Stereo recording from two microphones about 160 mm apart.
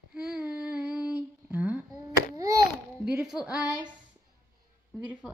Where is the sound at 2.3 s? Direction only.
20° right (ahead or behind).